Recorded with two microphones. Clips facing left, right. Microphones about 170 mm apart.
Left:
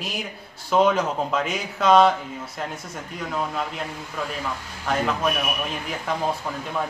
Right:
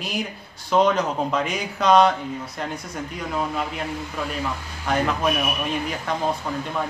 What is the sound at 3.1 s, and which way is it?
Speech, centre (ahead or behind).